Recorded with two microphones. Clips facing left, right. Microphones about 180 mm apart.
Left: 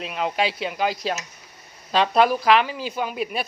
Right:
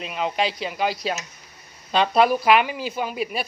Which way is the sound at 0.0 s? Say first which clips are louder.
Even; centre (ahead or behind).